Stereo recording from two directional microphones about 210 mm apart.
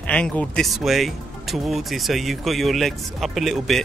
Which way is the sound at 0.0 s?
5° left (ahead or behind).